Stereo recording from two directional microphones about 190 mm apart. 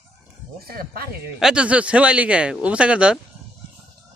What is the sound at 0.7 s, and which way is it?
Speech, 50° right (ahead or behind).